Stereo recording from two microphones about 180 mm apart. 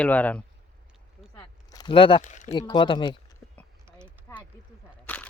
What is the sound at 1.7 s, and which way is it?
Speech, 25° left (ahead or behind).